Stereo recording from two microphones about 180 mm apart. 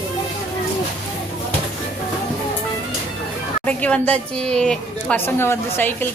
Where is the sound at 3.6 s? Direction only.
10° left (ahead or behind).